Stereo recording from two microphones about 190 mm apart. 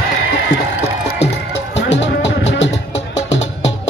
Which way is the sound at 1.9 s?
70° left (ahead or behind).